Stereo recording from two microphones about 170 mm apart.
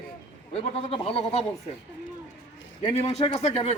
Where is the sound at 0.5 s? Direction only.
35° left (ahead or behind).